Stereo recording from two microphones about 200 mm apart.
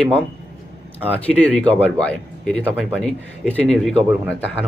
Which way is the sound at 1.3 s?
5° left (ahead or behind).